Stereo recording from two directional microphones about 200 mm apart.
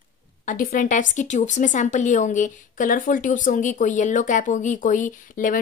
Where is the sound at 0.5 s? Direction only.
40° left (ahead or behind).